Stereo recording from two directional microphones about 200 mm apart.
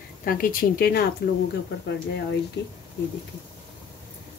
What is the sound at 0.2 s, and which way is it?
Speech, 45° left (ahead or behind).